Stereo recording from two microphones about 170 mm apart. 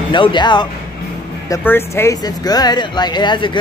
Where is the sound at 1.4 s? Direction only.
15° left (ahead or behind).